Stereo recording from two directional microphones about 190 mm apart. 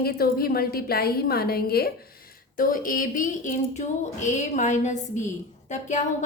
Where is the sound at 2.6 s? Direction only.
50° left (ahead or behind).